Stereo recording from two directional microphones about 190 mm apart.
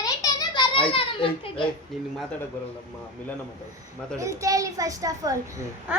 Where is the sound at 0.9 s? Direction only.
25° left (ahead or behind).